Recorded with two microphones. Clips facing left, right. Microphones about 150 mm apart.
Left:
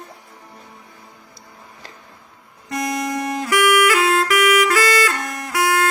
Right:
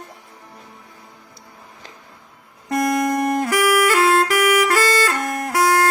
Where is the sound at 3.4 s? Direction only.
35° right (ahead or behind).